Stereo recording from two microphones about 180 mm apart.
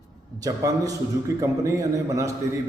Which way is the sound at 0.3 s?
20° right (ahead or behind).